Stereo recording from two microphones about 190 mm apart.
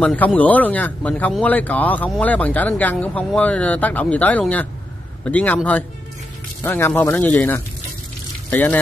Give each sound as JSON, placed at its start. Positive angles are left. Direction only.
{"t": 0.0, "sound": "speech", "side_deg": 5}
{"t": 6.6, "sound": "speech", "side_deg": 10}